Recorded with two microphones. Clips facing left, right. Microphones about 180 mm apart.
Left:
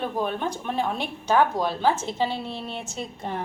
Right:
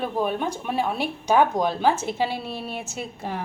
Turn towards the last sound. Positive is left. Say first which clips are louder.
# even
turn(degrees=-10)  # may be behind; listen again after turning